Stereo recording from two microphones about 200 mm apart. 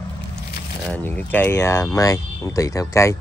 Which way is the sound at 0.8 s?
10° left (ahead or behind).